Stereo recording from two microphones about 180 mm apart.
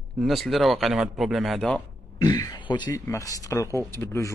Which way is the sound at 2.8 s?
15° left (ahead or behind).